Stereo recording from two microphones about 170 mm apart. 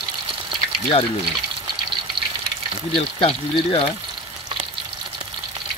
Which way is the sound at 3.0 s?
30° left (ahead or behind).